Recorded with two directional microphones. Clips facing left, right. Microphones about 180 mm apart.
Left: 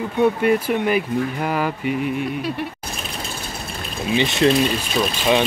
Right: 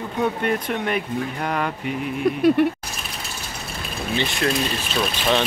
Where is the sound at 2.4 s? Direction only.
50° right (ahead or behind).